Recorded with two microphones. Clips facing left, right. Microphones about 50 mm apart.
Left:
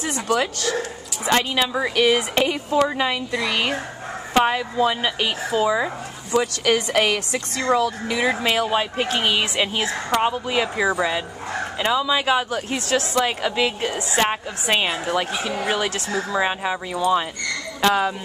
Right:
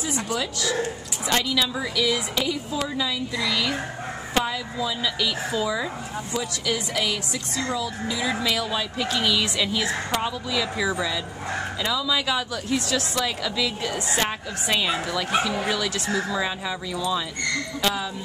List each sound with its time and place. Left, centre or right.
0.0 s speech: left
1.2 s a woman's voice: left
6.3 s speech: left
8.3 s a woman's voice: left